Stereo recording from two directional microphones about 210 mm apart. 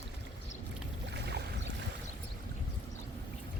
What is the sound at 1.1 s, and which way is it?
Boat, 50° right (ahead or behind).